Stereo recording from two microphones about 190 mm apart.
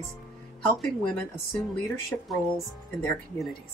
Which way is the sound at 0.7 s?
Centre (ahead or behind).